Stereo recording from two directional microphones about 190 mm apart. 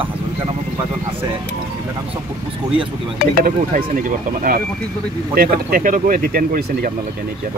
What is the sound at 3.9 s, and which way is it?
A man's voice, 45° right (ahead or behind).